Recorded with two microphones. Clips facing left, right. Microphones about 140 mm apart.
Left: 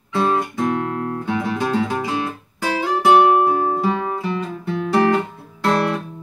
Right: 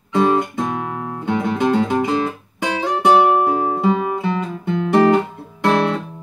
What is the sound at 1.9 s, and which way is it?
Music, 20° right (ahead or behind).